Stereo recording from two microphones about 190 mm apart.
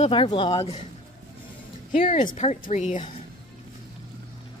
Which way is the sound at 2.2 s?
40° left (ahead or behind).